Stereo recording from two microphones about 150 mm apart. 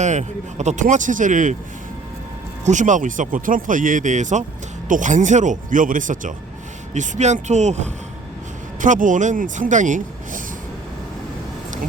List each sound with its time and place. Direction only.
0.0 s speech: 50° right (ahead or behind)
2.6 s speech: 55° right (ahead or behind)